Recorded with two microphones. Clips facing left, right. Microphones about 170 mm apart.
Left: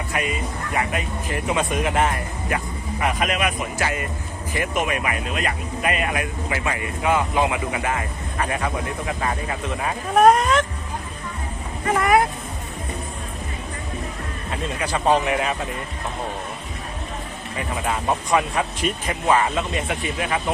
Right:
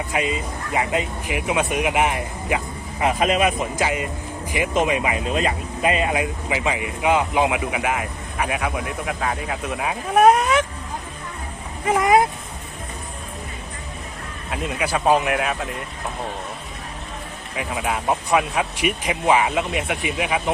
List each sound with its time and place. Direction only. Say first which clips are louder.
0.1 s speech: right 1 dB; 20° right (ahead or behind)
1.4 s speech: right 1 dB; 10° right (ahead or behind)
3.0 s speech: right 4 dB; 25° right (ahead or behind)
3.8 s speech: right 2 dB; 15° right (ahead or behind)
11.9 s speech: right 2 dB; 20° right (ahead or behind)
14.5 s speech: right 2 dB; 10° right (ahead or behind)
17.6 s speech: right 1 dB; 5° right (ahead or behind)